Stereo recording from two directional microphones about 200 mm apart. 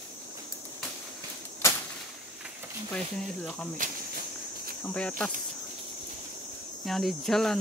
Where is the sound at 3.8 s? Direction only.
40° right (ahead or behind).